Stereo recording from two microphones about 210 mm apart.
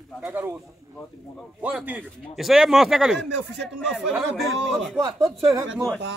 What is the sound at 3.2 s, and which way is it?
Speech, 55° right (ahead or behind).